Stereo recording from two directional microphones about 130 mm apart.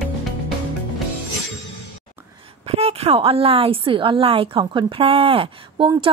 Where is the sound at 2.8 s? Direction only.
50° right (ahead or behind).